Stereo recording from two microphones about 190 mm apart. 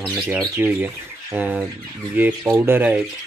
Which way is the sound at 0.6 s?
10° right (ahead or behind).